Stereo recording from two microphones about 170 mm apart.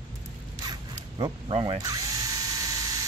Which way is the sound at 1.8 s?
20° right (ahead or behind).